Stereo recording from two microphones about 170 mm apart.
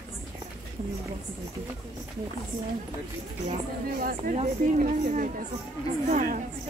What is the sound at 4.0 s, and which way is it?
Speech, 55° right (ahead or behind).